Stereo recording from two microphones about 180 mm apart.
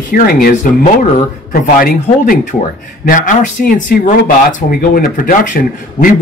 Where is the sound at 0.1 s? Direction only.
55° left (ahead or behind).